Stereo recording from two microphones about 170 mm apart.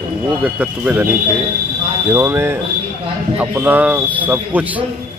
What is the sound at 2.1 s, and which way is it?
A man's voice, 15° right (ahead or behind).